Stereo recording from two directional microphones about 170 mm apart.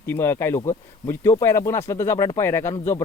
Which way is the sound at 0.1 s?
15° left (ahead or behind).